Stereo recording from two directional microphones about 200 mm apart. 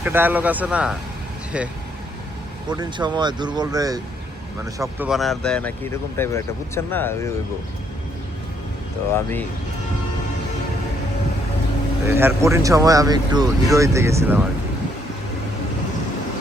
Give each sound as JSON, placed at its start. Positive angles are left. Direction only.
{"t": 0.0, "sound": "speech", "side_deg": -10}
{"t": 2.6, "sound": "speech", "side_deg": -20}
{"t": 5.0, "sound": "speech", "side_deg": 0}
{"t": 9.1, "sound": "speech", "side_deg": 10}
{"t": 12.0, "sound": "speech", "side_deg": -15}